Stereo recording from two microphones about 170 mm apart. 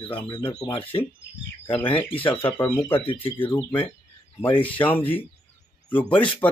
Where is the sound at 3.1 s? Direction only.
30° left (ahead or behind).